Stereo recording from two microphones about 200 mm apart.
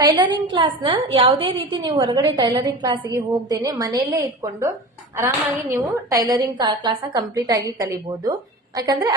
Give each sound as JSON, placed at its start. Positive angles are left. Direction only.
{"t": 0.0, "sound": "a woman's voice", "side_deg": -20}
{"t": 5.7, "sound": "a woman's voice", "side_deg": -15}